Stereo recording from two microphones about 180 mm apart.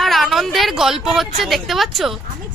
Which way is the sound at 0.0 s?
Centre (ahead or behind).